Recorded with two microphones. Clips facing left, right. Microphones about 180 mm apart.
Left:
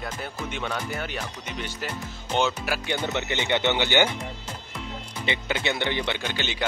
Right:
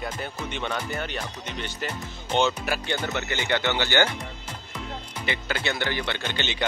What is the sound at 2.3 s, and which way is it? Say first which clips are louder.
Speech: right 1 dB; 5° left (ahead or behind).